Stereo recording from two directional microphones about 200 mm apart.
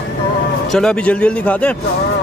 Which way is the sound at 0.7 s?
5° left (ahead or behind).